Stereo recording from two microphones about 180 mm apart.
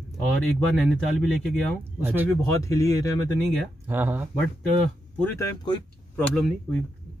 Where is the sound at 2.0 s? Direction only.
10° right (ahead or behind).